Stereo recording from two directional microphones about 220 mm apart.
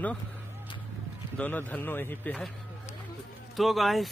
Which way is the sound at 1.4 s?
10° left (ahead or behind).